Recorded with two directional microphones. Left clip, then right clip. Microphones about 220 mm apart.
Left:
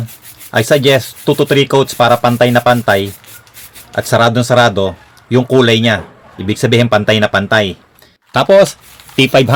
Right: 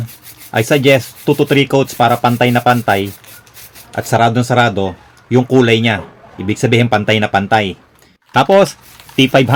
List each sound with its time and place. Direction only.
0.5 s speech: 10° left (ahead or behind)
4.1 s speech: 10° left (ahead or behind)